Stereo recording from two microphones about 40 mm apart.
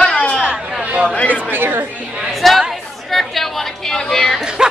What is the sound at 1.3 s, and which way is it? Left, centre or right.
Speech, right.